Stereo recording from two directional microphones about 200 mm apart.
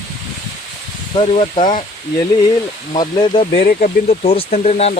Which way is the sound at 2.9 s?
20° left (ahead or behind).